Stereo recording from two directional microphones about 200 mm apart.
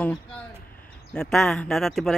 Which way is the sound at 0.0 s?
5° left (ahead or behind).